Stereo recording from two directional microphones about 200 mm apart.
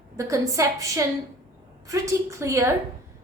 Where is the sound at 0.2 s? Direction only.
15° right (ahead or behind).